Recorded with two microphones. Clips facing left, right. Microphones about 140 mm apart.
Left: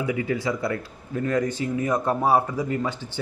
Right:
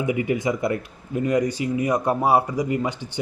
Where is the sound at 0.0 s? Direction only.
20° right (ahead or behind).